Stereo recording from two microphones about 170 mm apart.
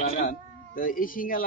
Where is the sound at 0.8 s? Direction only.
55° left (ahead or behind).